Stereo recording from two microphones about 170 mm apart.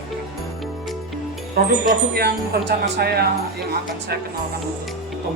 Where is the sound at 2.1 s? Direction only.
70° right (ahead or behind).